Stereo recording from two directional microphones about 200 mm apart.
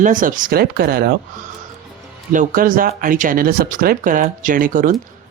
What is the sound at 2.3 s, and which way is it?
Speech, 40° right (ahead or behind).